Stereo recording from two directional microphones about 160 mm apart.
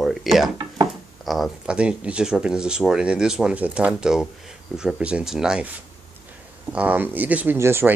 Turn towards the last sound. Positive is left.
turn(degrees=-15)  # may be behind; listen again after turning